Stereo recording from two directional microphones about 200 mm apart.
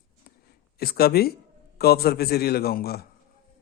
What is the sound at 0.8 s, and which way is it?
Speech, 50° left (ahead or behind).